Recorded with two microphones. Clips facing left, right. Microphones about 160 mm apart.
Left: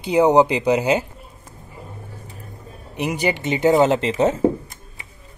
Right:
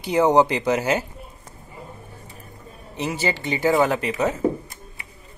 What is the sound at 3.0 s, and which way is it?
Speech, 15° left (ahead or behind).